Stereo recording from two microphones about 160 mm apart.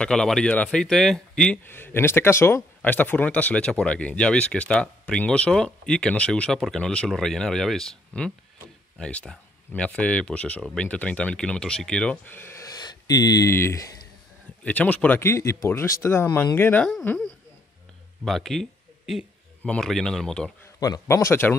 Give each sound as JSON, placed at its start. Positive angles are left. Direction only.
{"t": 0.0, "sound": "speech", "side_deg": 5}
{"t": 18.2, "sound": "speech", "side_deg": 0}
{"t": 20.8, "sound": "speech", "side_deg": 20}